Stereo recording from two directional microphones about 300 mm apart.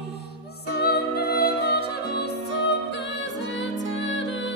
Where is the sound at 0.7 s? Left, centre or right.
Left.